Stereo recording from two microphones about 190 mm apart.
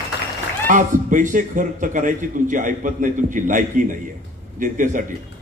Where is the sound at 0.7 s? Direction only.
45° right (ahead or behind).